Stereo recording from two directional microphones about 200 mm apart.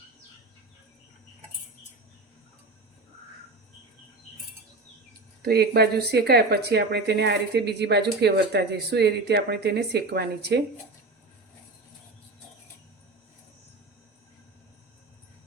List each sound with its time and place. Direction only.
5.4 s speech: 50° right (ahead or behind)